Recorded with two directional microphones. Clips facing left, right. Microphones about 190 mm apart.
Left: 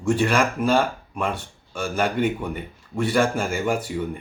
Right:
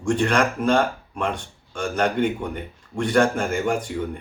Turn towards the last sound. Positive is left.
turn(degrees=5)  # may be behind; listen again after turning